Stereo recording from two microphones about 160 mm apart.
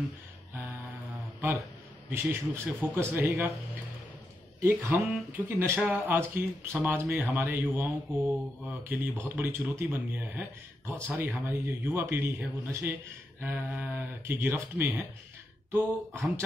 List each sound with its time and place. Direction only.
2.0 s a man's voice: 15° right (ahead or behind)
4.6 s a man's voice: 15° right (ahead or behind)